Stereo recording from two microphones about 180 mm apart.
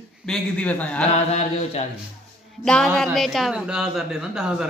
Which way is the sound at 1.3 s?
40° left (ahead or behind).